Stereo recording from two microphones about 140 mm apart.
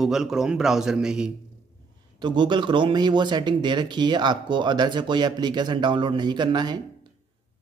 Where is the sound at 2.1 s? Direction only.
35° right (ahead or behind).